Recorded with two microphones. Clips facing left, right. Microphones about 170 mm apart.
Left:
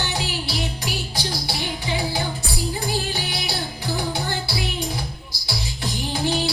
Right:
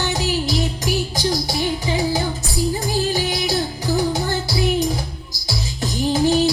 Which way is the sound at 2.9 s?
40° right (ahead or behind).